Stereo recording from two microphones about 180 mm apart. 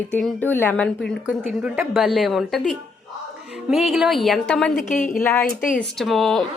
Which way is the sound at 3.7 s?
Centre (ahead or behind).